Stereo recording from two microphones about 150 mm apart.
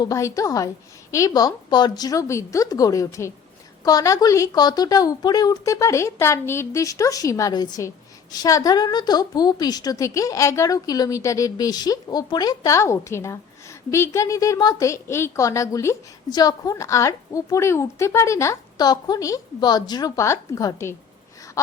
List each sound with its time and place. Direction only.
0.0 s a woman's voice: 20° left (ahead or behind)